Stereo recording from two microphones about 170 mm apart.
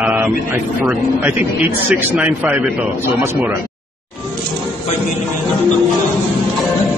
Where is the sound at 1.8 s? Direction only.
10° right (ahead or behind).